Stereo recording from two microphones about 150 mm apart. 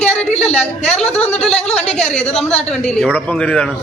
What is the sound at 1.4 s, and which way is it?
Speech, 5° left (ahead or behind).